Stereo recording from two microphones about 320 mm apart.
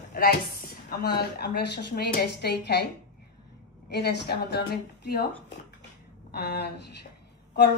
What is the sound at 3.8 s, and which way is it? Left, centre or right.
Speech, left.